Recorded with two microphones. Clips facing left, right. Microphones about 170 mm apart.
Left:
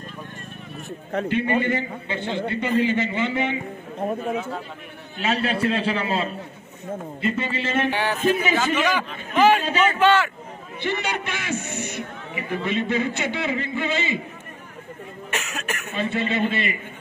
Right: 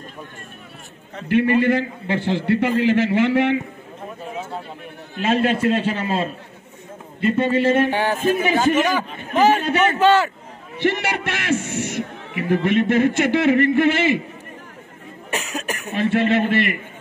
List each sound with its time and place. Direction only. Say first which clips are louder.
1.3 s a man's voice: right 7 dB; 90° right
5.1 s a man's voice: right 5 dB; 50° right (ahead or behind)
10.8 s a man's voice: right 5 dB; 90° right
15.3 s speech: right 4 dB; 35° right (ahead or behind)
15.9 s a man's voice: right 7 dB; 70° right (ahead or behind)